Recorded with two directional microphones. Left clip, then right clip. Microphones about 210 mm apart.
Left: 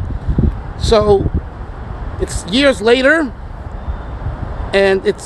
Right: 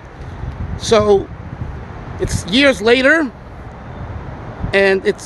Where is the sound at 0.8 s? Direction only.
5° right (ahead or behind).